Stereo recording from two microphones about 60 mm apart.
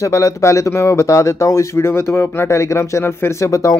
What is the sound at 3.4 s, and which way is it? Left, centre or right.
Speech, left.